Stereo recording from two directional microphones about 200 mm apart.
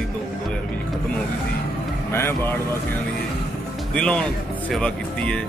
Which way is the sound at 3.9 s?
5° left (ahead or behind).